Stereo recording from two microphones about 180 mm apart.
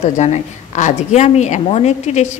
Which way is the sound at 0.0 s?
40° left (ahead or behind).